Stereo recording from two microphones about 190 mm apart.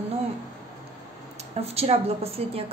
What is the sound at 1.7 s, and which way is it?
Speech, 30° right (ahead or behind).